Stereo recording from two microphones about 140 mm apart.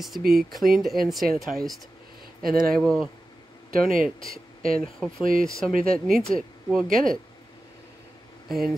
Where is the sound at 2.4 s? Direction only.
90° right.